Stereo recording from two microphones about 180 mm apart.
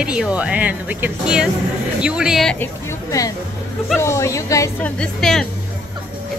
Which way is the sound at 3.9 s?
15° left (ahead or behind).